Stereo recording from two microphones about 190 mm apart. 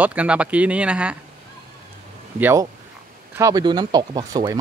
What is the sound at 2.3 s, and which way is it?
Speech, 10° right (ahead or behind).